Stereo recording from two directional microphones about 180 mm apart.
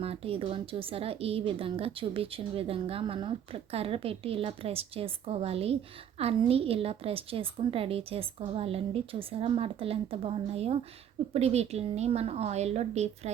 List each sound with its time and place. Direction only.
0.0 s a woman's voice: 35° right (ahead or behind)